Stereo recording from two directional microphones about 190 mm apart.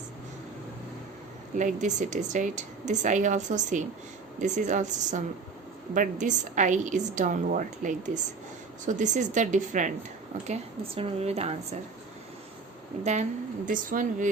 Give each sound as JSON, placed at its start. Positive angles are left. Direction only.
{"t": 1.5, "sound": "a woman's voice", "side_deg": -40}
{"t": 13.7, "sound": "a woman's voice", "side_deg": -45}